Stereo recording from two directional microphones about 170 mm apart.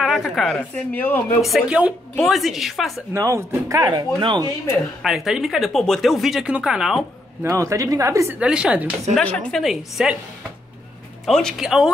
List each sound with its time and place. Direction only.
0.0 s speech: centre (ahead or behind)
1.4 s speech: 5° right (ahead or behind)
3.1 s speech: 15° right (ahead or behind)
5.0 s speech: centre (ahead or behind)
7.4 s speech: 20° right (ahead or behind)
8.4 s speech: 5° right (ahead or behind)
9.1 s speech: 5° left (ahead or behind)
11.2 s speech: centre (ahead or behind)